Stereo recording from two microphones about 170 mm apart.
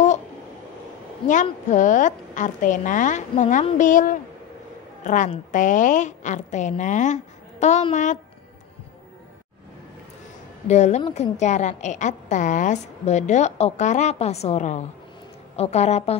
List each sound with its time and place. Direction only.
1.2 s a woman's voice: 45° left (ahead or behind)
10.7 s a woman's voice: 40° left (ahead or behind)